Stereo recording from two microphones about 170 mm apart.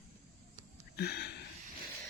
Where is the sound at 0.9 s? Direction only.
65° left (ahead or behind).